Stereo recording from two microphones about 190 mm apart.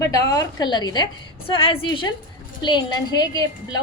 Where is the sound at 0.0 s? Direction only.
15° left (ahead or behind).